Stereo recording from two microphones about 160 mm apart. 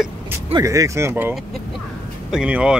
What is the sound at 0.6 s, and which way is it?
Speech, 20° right (ahead or behind).